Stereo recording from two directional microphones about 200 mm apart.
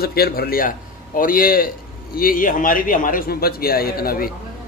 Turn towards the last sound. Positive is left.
turn(degrees=45)  # may be behind; listen again after turning